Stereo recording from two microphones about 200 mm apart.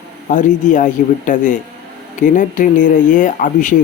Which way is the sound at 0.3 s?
40° left (ahead or behind).